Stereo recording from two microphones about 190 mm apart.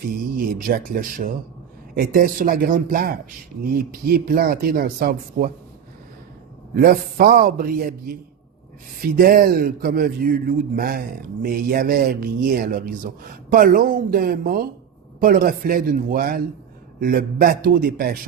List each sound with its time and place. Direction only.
0.1 s a man's voice: 50° right (ahead or behind)
6.7 s a man's voice: 50° right (ahead or behind)